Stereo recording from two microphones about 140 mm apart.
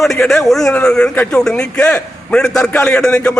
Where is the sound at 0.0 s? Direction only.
Centre (ahead or behind).